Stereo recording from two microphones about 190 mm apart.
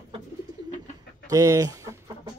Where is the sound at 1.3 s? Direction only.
15° right (ahead or behind).